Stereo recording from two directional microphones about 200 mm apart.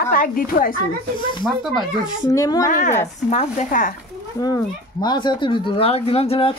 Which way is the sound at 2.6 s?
40° left (ahead or behind).